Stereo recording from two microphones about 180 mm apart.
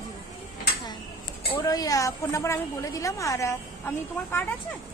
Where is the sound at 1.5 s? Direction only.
20° left (ahead or behind).